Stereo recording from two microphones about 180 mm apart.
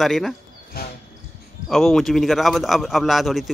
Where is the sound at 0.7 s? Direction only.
55° left (ahead or behind).